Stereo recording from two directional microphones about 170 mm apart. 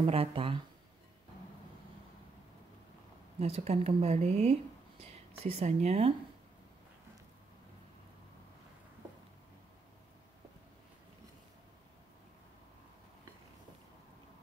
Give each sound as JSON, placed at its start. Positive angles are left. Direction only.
{"t": 0.0, "sound": "speech", "side_deg": -35}
{"t": 3.3, "sound": "speech", "side_deg": -40}